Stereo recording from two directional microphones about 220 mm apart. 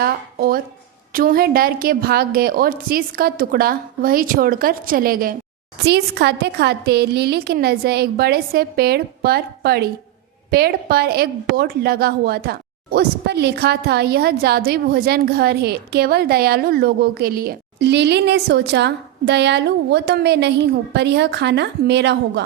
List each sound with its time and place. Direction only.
0.0 s a woman's voice: 40° right (ahead or behind)